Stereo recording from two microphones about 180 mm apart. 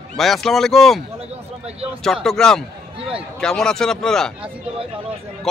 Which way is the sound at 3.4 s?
5° left (ahead or behind).